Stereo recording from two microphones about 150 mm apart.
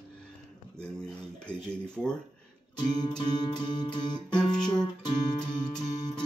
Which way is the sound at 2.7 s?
30° left (ahead or behind).